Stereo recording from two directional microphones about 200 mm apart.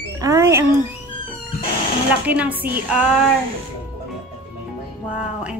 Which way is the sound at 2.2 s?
5° right (ahead or behind).